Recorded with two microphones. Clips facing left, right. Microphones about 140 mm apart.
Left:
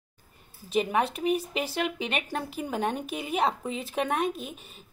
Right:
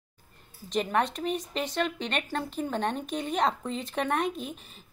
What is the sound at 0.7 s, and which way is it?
Speech, 5° left (ahead or behind).